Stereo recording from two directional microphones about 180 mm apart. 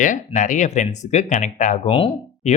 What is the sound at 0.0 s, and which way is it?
Speech, 45° left (ahead or behind).